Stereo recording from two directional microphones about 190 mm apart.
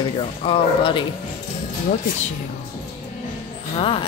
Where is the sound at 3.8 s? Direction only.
30° left (ahead or behind).